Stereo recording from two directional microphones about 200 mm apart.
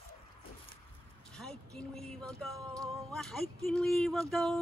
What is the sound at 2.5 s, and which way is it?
Music, 15° right (ahead or behind).